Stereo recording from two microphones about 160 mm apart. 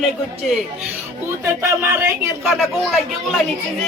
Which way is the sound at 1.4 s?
15° right (ahead or behind).